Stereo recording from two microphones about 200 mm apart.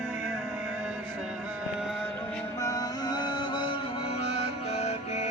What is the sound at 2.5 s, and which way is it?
Music, 15° left (ahead or behind).